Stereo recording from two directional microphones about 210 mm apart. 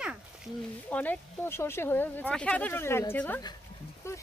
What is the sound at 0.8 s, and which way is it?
Speech, 5° left (ahead or behind).